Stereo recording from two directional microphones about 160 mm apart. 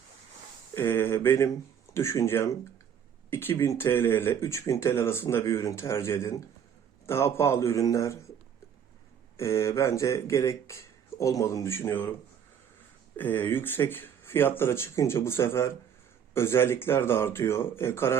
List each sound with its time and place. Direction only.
0.8 s speech: 15° left (ahead or behind)
9.4 s speech: 15° left (ahead or behind)
13.1 s speech: 10° left (ahead or behind)